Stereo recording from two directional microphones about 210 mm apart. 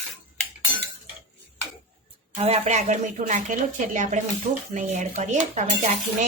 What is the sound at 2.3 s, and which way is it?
Cutlery, 30° right (ahead or behind).